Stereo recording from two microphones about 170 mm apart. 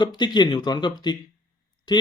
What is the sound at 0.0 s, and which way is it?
Speech, 25° left (ahead or behind).